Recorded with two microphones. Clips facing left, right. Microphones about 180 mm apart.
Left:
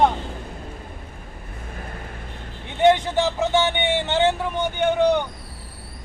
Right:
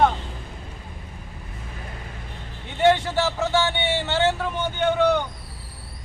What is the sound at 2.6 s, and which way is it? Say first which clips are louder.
A man's voice: left 2 dB; 20° left (ahead or behind).